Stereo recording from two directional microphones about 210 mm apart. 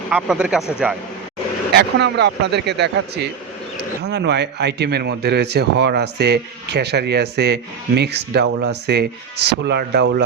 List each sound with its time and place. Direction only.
0.1 s speech: 5° right (ahead or behind)
1.7 s speech: 55° right (ahead or behind)